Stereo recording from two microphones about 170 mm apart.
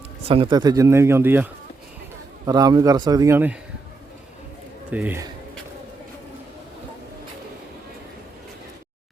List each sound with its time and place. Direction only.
0.3 s speech: 30° right (ahead or behind); by 1.5 s 10° right (ahead or behind)
2.5 s a man's voice: 20° right (ahead or behind)
4.9 s speech: 10° right (ahead or behind)